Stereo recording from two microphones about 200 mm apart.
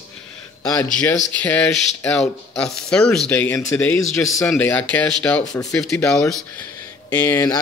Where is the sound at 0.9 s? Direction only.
5° left (ahead or behind).